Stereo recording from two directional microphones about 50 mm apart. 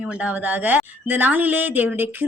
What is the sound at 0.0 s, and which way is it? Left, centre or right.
Speech, right.